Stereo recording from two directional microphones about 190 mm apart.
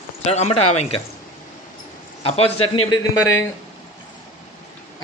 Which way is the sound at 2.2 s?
30° left (ahead or behind).